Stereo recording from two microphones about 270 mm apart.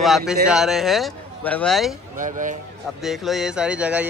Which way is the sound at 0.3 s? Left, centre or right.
Centre.